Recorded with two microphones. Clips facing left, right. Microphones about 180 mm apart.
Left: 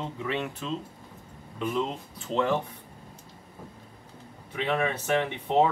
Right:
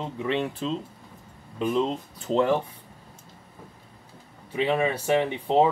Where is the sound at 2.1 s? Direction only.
40° right (ahead or behind).